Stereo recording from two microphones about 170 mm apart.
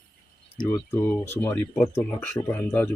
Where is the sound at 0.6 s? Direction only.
10° left (ahead or behind).